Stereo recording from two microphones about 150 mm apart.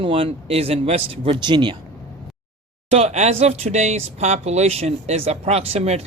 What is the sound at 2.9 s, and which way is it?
Speech, 45° right (ahead or behind).